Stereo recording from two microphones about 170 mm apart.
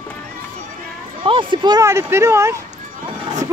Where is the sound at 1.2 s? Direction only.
30° right (ahead or behind).